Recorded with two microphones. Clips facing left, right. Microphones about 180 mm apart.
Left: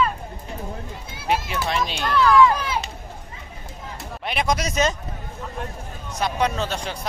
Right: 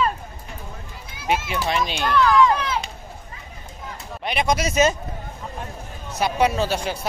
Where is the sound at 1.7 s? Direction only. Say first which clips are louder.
Right 2 dB; centre (ahead or behind).